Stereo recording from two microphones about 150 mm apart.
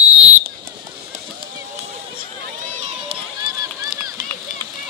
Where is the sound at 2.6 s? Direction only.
50° right (ahead or behind).